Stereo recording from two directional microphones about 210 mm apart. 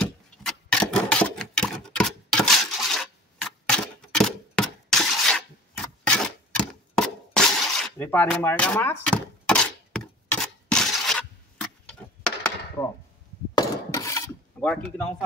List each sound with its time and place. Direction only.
0.0 s sewing machine: 5° left (ahead or behind)
13.6 s breaking: 15° left (ahead or behind)
14.6 s speech: 5° left (ahead or behind)